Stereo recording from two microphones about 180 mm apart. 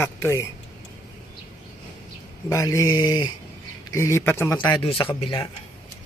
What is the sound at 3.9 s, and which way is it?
Speech, 15° left (ahead or behind).